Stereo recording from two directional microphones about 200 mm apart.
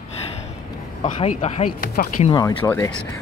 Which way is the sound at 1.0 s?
35° left (ahead or behind).